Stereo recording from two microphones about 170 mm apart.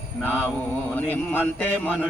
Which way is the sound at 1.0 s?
10° left (ahead or behind).